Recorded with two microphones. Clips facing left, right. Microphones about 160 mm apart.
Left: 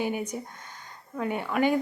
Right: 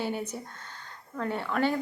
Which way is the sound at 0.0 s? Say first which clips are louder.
Left 3 dB; 15° left (ahead or behind).